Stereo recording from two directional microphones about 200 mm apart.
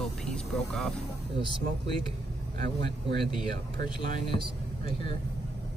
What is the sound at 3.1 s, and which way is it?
Speech, 25° left (ahead or behind).